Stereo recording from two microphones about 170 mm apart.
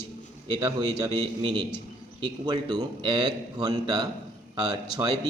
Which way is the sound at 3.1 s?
25° right (ahead or behind).